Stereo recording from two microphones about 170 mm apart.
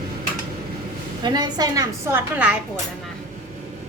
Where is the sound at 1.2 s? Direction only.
25° right (ahead or behind).